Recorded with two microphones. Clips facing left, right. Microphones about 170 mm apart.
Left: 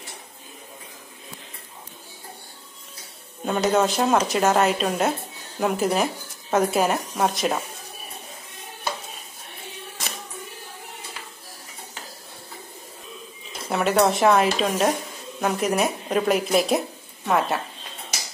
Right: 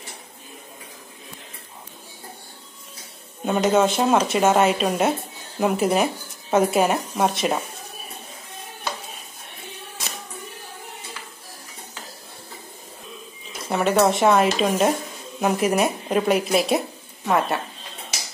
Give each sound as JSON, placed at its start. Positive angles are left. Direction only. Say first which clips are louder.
{"t": 3.4, "sound": "a woman's voice", "louder": "right 2 dB", "side_deg": 0}
{"t": 13.7, "sound": "a woman's voice", "louder": "right 1 dB", "side_deg": 0}